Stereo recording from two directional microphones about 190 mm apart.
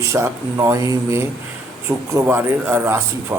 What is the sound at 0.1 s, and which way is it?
A man's voice, 15° right (ahead or behind).